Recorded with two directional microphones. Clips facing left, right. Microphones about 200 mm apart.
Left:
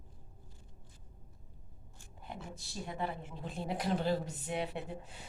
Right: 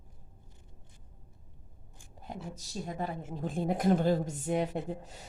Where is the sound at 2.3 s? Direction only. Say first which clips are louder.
Right 5 dB; 40° right (ahead or behind).